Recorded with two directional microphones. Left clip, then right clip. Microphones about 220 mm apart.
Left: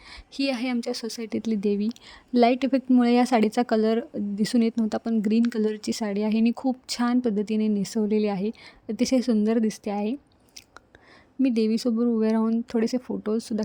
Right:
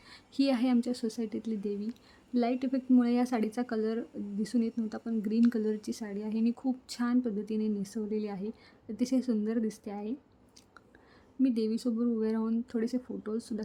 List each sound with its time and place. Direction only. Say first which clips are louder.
0.1 s a woman's voice: left 2 dB; 30° left (ahead or behind)
11.4 s a woman's voice: left 7 dB; 35° left (ahead or behind)